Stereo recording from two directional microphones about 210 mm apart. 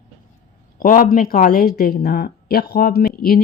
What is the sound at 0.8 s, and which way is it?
A woman's voice, 40° left (ahead or behind).